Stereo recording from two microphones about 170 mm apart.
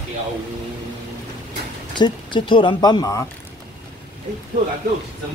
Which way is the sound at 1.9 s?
25° left (ahead or behind).